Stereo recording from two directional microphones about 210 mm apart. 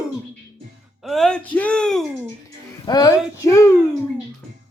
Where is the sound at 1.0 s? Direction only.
Centre (ahead or behind).